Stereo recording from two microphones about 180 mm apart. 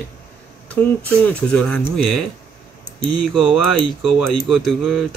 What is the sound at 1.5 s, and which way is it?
Speech, 5° left (ahead or behind).